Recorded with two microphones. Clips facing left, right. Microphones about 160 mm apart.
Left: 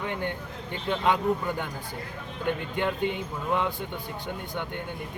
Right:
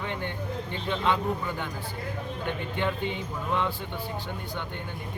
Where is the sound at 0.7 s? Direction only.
10° left (ahead or behind).